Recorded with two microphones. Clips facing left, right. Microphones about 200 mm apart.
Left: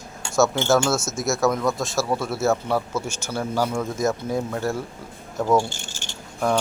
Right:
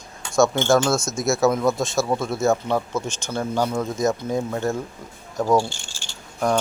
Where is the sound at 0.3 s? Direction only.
5° left (ahead or behind).